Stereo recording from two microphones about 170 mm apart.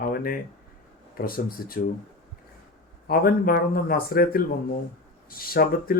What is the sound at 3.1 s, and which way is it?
Speech, 60° left (ahead or behind).